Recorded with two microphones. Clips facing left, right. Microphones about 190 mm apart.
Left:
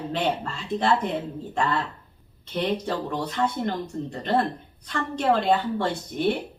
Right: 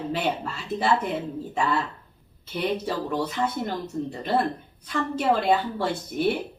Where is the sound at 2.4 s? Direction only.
5° right (ahead or behind).